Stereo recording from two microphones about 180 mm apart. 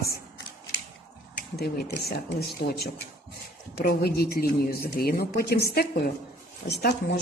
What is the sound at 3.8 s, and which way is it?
A woman's voice, 60° left (ahead or behind).